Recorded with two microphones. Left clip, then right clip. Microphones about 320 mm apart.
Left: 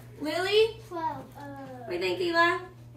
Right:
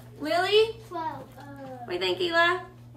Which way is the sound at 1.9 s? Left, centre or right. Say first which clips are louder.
Right 2 dB; centre.